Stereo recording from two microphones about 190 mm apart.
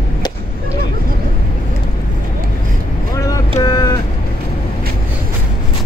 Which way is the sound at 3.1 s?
20° left (ahead or behind).